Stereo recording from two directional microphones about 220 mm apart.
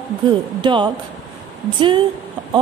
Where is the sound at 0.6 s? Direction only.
20° right (ahead or behind).